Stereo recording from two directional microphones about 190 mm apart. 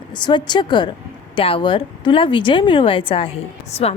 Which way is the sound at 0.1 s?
25° left (ahead or behind).